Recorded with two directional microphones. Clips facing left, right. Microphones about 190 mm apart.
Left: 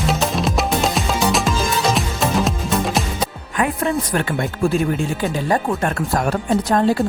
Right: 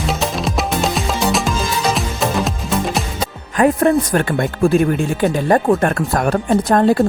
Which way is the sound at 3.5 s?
45° right (ahead or behind).